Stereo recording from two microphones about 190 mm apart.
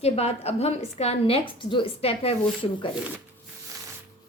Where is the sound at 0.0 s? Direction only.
35° left (ahead or behind).